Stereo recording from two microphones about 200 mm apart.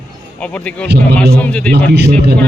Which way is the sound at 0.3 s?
5° left (ahead or behind).